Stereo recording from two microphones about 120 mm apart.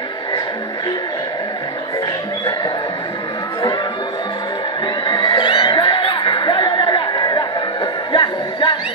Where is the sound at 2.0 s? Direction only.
35° left (ahead or behind).